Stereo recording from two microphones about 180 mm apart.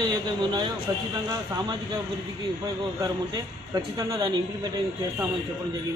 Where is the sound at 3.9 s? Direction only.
20° right (ahead or behind).